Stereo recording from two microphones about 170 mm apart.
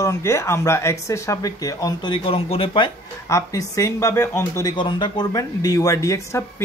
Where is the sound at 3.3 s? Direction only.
20° left (ahead or behind).